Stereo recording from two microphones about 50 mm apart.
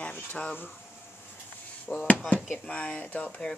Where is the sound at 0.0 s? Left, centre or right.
Left.